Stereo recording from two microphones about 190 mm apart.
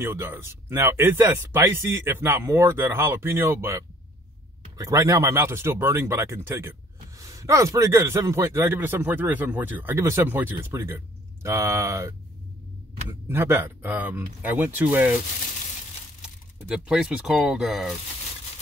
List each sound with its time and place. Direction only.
0.0 s a man's voice: 10° right (ahead or behind)
13.3 s a man's voice: 10° right (ahead or behind)
16.2 s speech: 5° right (ahead or behind)